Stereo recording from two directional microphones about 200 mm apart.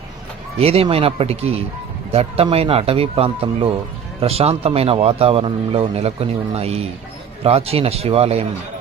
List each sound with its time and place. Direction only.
0.6 s a man's voice: 30° right (ahead or behind)